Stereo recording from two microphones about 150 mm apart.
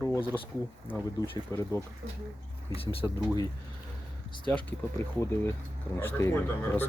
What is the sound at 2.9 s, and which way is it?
Speech, 30° left (ahead or behind).